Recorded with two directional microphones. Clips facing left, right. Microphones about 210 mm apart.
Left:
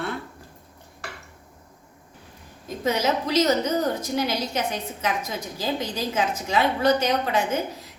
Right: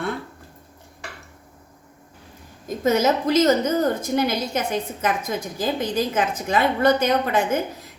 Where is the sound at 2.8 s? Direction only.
50° right (ahead or behind).